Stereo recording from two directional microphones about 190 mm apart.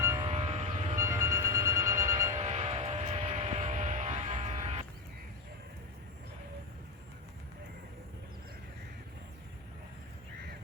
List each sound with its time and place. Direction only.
0.2 s train: 30° right (ahead or behind)
0.9 s music: 15° right (ahead or behind)
2.3 s a sound: 35° right (ahead or behind)